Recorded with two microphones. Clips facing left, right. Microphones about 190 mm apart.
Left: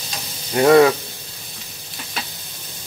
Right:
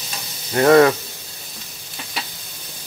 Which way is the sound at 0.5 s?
10° left (ahead or behind).